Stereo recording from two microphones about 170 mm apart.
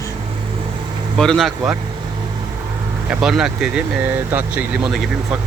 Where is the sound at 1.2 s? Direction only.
5° left (ahead or behind).